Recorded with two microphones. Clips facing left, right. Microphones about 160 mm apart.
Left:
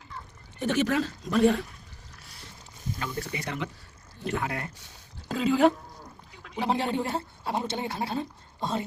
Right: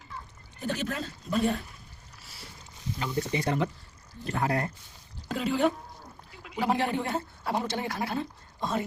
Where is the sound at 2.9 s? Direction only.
20° right (ahead or behind); by 4.7 s 40° right (ahead or behind).